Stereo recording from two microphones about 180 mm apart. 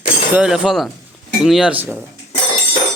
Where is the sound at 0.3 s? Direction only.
5° right (ahead or behind).